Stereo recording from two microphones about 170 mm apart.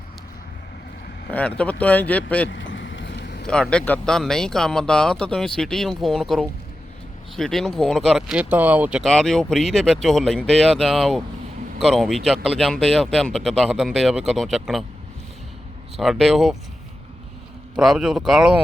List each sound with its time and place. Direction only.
1.3 s speech: 5° left (ahead or behind)
2.5 s vehicle: 90° left
3.4 s speech: 5° left (ahead or behind)
16.0 s speech: centre (ahead or behind)
17.7 s speech: 5° right (ahead or behind)